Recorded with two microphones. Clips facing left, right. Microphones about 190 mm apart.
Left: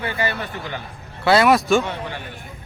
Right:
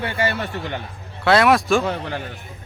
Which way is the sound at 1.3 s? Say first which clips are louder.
Even; centre (ahead or behind).